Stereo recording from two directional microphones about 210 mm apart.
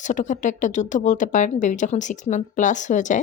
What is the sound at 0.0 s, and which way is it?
Speech, 35° left (ahead or behind).